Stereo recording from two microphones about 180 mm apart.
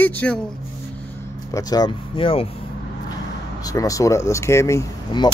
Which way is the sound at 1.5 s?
20° left (ahead or behind).